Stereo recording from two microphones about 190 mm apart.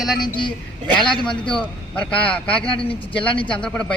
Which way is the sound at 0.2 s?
25° left (ahead or behind).